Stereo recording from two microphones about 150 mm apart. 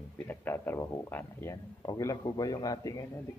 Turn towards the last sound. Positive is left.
turn(degrees=25)  # may be behind; listen again after turning